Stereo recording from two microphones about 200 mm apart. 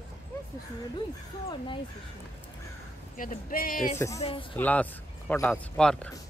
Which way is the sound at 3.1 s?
45° left (ahead or behind).